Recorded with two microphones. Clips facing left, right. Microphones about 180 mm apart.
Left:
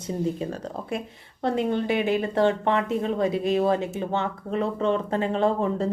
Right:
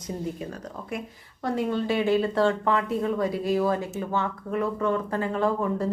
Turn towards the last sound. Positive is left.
turn(degrees=25)  # may be behind; listen again after turning